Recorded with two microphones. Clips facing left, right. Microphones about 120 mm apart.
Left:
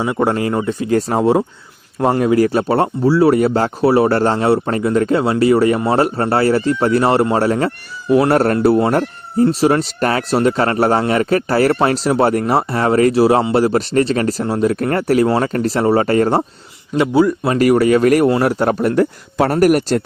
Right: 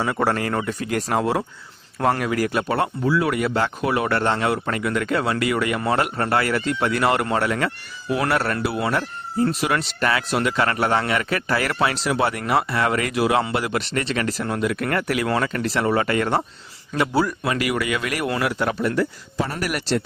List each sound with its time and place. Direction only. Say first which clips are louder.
0.0 s speech: left 5 dB; 15° left (ahead or behind); by 16.4 s 35° left (ahead or behind)
16.9 s speech: left 8 dB; 20° left (ahead or behind); by 20.0 s 45° left (ahead or behind)